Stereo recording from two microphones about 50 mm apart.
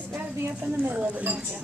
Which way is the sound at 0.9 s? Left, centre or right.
Right.